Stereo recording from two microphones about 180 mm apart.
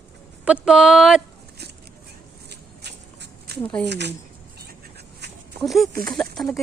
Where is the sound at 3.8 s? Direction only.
70° right (ahead or behind).